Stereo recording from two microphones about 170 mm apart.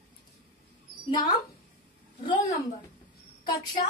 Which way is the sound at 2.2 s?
25° left (ahead or behind).